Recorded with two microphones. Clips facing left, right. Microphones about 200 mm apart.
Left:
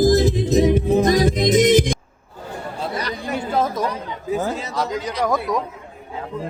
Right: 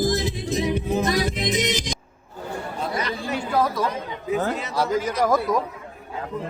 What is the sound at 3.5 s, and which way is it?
Chatter, 20° left (ahead or behind).